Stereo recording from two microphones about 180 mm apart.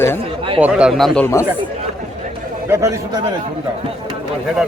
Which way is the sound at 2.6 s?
15° right (ahead or behind).